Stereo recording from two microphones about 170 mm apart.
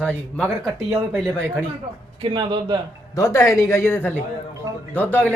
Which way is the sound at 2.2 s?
30° right (ahead or behind).